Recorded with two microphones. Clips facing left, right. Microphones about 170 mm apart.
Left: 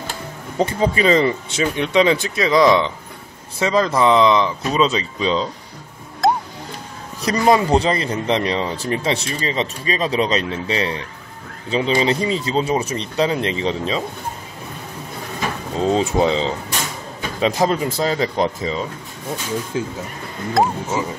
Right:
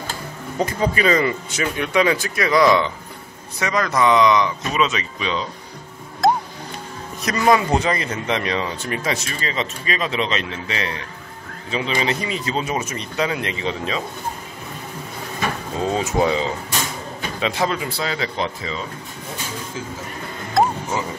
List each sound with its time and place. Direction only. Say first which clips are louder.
0.6 s speech: left 3 dB; 25° left (ahead or behind)
6.2 s music: even; centre (ahead or behind)
7.2 s speech: left 2 dB; 30° left (ahead or behind)
15.8 s speech: left 3 dB; 30° left (ahead or behind)
17.4 s speech: left 5 dB; 40° left (ahead or behind)
20.6 s speech: even; centre (ahead or behind)